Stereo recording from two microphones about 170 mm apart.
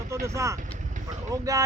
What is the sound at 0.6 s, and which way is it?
Vehicle, 45° right (ahead or behind).